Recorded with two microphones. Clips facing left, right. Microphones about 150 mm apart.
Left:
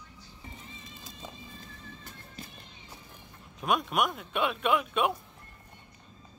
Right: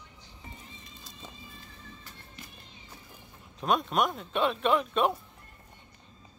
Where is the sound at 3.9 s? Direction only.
5° left (ahead or behind).